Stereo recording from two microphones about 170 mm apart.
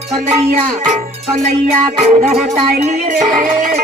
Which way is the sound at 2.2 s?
40° right (ahead or behind).